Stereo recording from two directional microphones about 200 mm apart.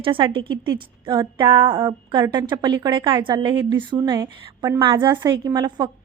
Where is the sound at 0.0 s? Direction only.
25° right (ahead or behind).